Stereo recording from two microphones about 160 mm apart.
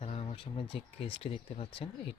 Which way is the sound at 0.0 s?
40° left (ahead or behind).